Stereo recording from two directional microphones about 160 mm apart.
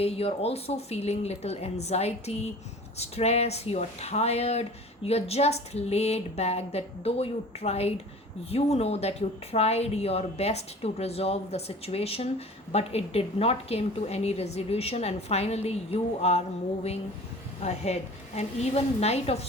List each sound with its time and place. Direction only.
0.0 s a woman's voice: 40° left (ahead or behind)
17.6 s a woman's voice: 40° left (ahead or behind)